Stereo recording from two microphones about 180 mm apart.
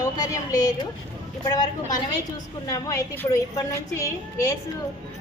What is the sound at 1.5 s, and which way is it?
A woman's voice, 25° left (ahead or behind).